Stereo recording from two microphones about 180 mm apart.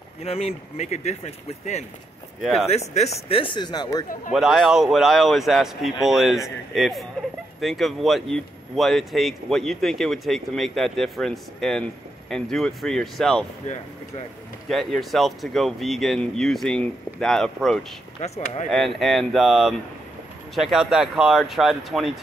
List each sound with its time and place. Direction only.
0.2 s speech: 35° left (ahead or behind)
4.3 s speech: 5° right (ahead or behind)
14.7 s speech: centre (ahead or behind)
18.2 s speech: 35° left (ahead or behind)
18.9 s speech: centre (ahead or behind)